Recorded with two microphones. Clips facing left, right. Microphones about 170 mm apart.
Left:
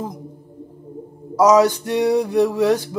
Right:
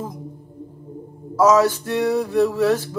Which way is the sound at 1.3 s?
15° left (ahead or behind).